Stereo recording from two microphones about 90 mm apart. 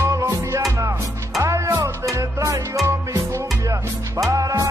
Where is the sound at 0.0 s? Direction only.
35° right (ahead or behind).